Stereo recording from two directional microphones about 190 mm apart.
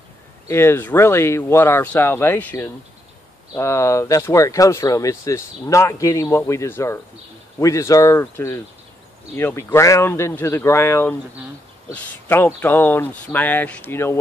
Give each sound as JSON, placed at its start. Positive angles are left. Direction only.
{"t": 0.5, "sound": "speech", "side_deg": 15}